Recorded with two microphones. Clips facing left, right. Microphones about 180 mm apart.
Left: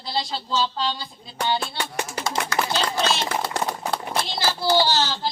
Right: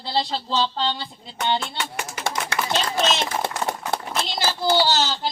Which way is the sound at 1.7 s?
35° left (ahead or behind).